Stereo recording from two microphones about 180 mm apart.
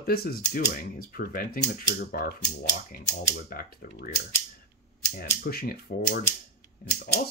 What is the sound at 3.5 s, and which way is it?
Speech, 55° left (ahead or behind).